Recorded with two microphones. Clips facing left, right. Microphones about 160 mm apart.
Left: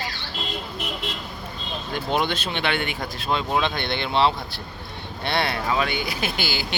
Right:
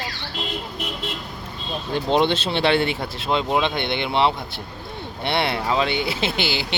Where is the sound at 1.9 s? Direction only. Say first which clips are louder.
Right 5 dB; 30° right (ahead or behind).